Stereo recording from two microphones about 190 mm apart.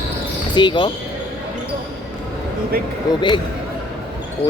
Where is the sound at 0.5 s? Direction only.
25° left (ahead or behind).